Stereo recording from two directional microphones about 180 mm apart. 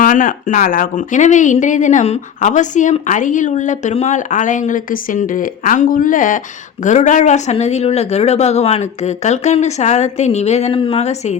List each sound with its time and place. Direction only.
0.0 s speech: 50° left (ahead or behind)